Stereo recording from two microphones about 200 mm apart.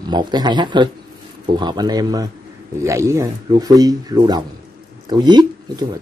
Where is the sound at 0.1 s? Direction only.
20° right (ahead or behind).